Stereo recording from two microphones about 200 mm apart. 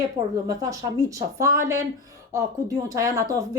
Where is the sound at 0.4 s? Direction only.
15° right (ahead or behind).